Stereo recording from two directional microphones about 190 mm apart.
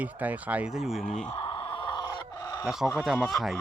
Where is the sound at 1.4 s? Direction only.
25° left (ahead or behind).